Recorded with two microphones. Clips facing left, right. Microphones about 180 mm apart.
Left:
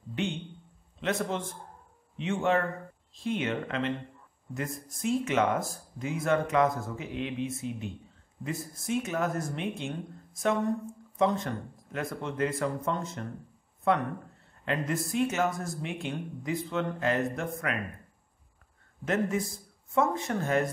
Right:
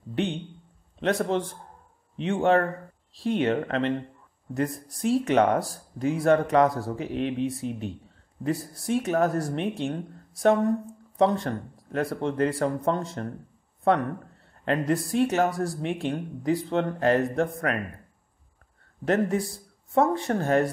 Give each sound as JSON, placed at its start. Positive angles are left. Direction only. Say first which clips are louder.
{"t": 1.0, "sound": "speech", "louder": "right 6 dB", "side_deg": -35}
{"t": 14.6, "sound": "speech", "louder": "right 6 dB", "side_deg": -40}
{"t": 19.0, "sound": "speech", "louder": "right 5 dB", "side_deg": -35}